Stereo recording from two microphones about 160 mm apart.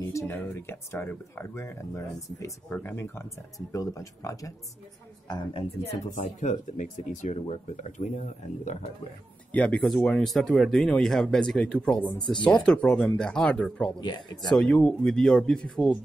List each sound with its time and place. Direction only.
0.0 s speech: 15° left (ahead or behind)
5.3 s speech: 30° left (ahead or behind)
6.1 s speech: 50° left (ahead or behind)
9.5 s speech: 10° left (ahead or behind)
13.9 s speech: 25° left (ahead or behind)
14.5 s speech: 5° left (ahead or behind)